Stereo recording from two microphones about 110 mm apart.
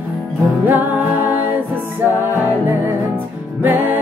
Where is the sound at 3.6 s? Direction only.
15° right (ahead or behind).